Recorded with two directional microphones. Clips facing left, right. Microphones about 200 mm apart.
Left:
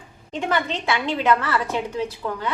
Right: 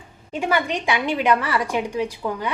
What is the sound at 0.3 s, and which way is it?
A woman's voice, 10° right (ahead or behind).